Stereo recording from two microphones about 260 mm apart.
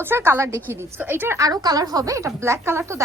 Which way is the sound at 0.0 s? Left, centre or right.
Centre.